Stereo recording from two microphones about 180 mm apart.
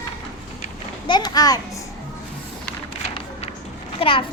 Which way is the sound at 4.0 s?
30° left (ahead or behind).